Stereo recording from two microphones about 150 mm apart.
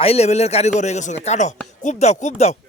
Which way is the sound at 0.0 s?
45° left (ahead or behind).